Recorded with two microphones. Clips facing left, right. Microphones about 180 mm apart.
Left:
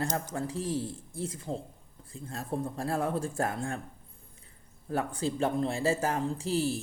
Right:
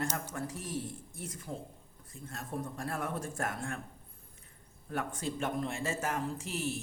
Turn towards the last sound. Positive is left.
turn(degrees=35)  # may be behind; listen again after turning